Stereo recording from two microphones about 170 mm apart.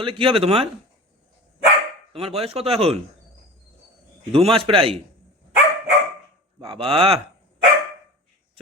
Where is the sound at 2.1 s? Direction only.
35° right (ahead or behind).